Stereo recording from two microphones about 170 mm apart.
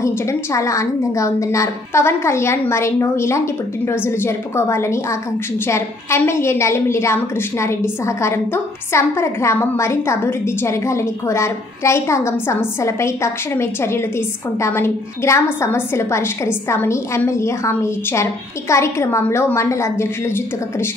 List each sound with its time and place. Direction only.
0.0 s a woman's voice: 15° left (ahead or behind)